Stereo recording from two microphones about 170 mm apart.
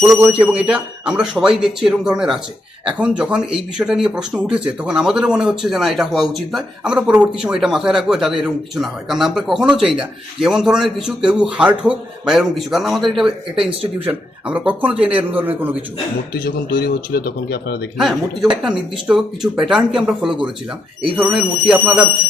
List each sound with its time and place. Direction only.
0.1 s speech: 10° right (ahead or behind)
16.3 s speech: 65° left (ahead or behind)
17.9 s speech: centre (ahead or behind)